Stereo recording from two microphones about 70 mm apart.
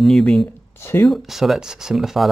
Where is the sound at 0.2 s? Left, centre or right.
Centre.